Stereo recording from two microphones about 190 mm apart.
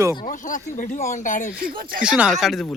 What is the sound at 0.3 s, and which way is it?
Speech, 45° left (ahead or behind).